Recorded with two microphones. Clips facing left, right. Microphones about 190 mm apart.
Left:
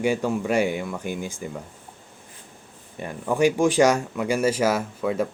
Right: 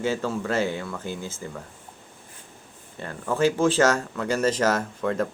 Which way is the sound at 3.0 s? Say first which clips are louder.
Left 2 dB; 15° left (ahead or behind).